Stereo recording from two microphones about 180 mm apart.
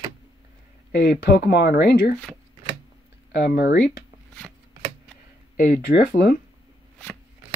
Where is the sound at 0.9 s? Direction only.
65° left (ahead or behind).